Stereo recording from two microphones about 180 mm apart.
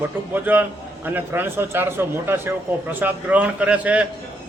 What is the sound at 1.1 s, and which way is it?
Speech, 10° right (ahead or behind).